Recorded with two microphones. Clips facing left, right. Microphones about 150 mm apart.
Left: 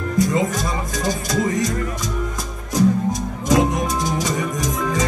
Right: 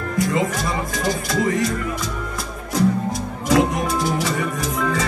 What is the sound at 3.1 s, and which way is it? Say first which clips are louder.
Music: left 1 dB; 20° left (ahead or behind).